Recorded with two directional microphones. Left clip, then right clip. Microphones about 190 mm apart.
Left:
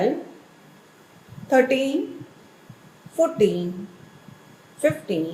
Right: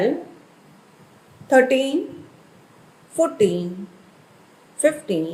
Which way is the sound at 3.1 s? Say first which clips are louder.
Right 1 dB; 40° right (ahead or behind).